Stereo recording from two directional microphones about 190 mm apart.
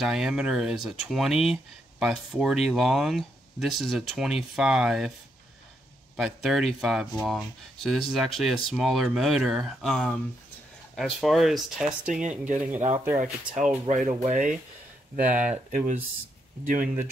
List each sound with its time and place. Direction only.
0.0 s speech: 5° right (ahead or behind)
6.1 s speech: centre (ahead or behind)
12.1 s speech: 40° right (ahead or behind)
12.9 s speech: 10° right (ahead or behind)
13.8 s speech: 40° right (ahead or behind)